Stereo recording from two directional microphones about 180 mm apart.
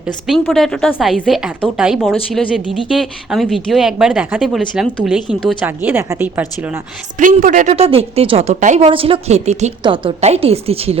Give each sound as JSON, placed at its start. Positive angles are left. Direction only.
{"t": 0.3, "sound": "a woman's voice", "side_deg": 0}
{"t": 7.2, "sound": "a woman's voice", "side_deg": -45}
{"t": 8.9, "sound": "a woman's voice", "side_deg": -30}
{"t": 9.8, "sound": "a woman's voice", "side_deg": -30}